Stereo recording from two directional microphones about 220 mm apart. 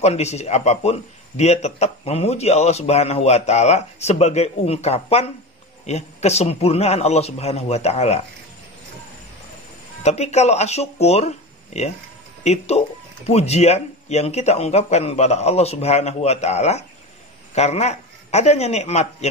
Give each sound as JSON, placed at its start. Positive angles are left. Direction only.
{"t": 0.0, "sound": "speech", "side_deg": 30}
{"t": 10.0, "sound": "speech", "side_deg": 30}